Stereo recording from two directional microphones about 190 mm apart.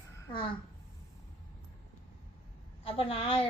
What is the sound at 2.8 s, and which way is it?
Speech, 30° left (ahead or behind).